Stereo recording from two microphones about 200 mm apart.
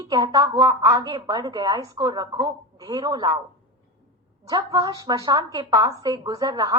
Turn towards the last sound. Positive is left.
turn(degrees=-20)  # may be behind; listen again after turning